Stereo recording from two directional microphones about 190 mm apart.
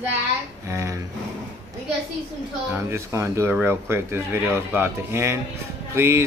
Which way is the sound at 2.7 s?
15° right (ahead or behind).